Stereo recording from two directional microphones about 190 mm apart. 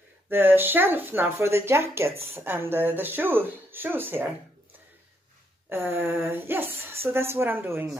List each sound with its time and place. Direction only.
0.3 s speech: 10° right (ahead or behind)
5.7 s speech: 10° right (ahead or behind)